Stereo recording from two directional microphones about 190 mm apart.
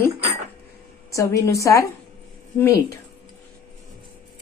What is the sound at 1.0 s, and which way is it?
A woman's voice, 15° left (ahead or behind).